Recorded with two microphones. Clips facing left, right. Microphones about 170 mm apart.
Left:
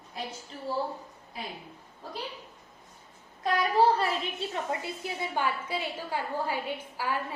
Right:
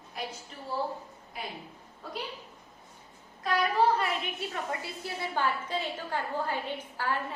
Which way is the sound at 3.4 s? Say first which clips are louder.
Left 2 dB; 35° left (ahead or behind).